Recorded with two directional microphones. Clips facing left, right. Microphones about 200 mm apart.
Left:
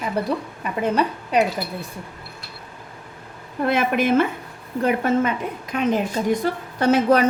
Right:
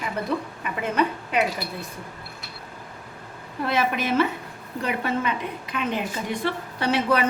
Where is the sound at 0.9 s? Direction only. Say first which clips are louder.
Left 2 dB; 40° left (ahead or behind).